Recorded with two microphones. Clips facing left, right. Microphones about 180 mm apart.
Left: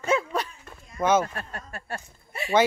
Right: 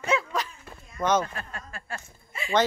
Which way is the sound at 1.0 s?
10° left (ahead or behind).